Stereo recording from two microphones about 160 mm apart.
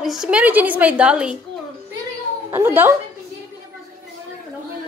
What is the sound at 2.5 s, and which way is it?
Speech, 15° right (ahead or behind).